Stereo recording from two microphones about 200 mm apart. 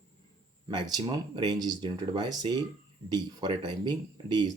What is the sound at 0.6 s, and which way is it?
Speech, 20° right (ahead or behind).